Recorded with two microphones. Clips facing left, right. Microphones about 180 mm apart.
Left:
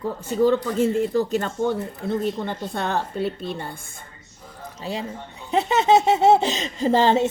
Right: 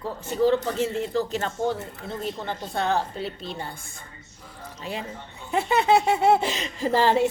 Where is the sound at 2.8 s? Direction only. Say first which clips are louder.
Even; 55° left (ahead or behind).